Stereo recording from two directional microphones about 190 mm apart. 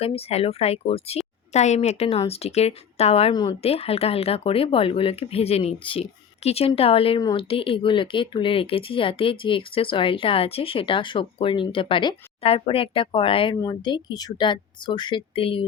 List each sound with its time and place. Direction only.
0.0 s a woman's voice: 30° left (ahead or behind)